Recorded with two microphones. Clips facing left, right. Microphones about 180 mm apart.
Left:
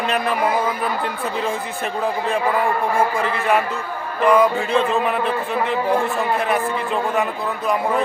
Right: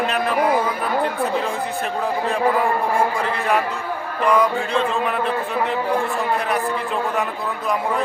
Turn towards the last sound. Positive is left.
turn(degrees=0)  # may be behind; listen again after turning